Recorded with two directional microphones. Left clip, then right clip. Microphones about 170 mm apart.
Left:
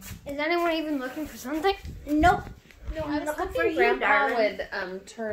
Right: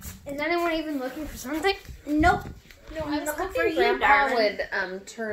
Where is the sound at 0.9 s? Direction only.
25° right (ahead or behind).